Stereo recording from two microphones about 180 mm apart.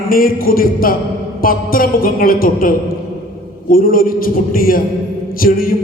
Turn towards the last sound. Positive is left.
turn(degrees=55)  # may be behind; listen again after turning